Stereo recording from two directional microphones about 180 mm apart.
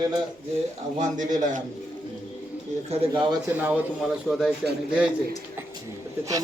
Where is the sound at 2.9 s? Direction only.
25° right (ahead or behind).